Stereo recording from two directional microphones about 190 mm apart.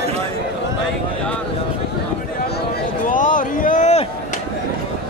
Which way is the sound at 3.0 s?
45° left (ahead or behind).